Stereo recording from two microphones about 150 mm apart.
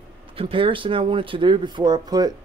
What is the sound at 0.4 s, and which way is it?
Speech, 35° right (ahead or behind).